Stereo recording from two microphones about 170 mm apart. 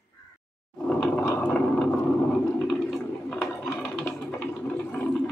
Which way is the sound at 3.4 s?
10° left (ahead or behind).